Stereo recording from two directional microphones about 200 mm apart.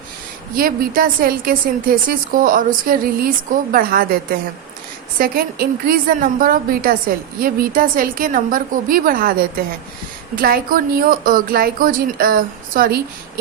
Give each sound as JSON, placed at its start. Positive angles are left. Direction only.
{"t": 0.5, "sound": "a woman's voice", "side_deg": -45}
{"t": 5.2, "sound": "a woman's voice", "side_deg": -45}